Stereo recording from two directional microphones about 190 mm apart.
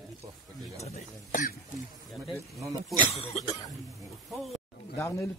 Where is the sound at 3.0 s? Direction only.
30° left (ahead or behind).